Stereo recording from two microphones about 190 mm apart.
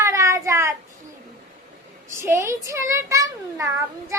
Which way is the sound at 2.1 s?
15° right (ahead or behind).